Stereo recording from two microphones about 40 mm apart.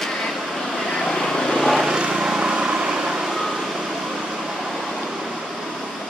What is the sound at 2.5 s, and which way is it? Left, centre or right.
Vehicle, right.